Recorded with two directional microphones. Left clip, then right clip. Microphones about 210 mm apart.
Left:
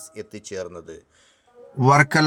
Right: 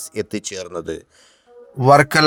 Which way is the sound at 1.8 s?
25° right (ahead or behind).